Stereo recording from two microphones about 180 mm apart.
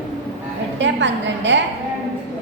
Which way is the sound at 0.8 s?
90° right.